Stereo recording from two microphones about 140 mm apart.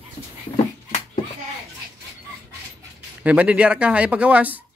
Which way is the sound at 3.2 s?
10° right (ahead or behind).